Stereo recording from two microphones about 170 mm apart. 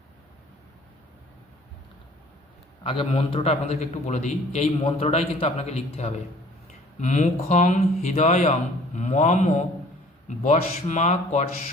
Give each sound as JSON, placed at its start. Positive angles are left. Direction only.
{"t": 2.8, "sound": "a man's voice", "side_deg": 30}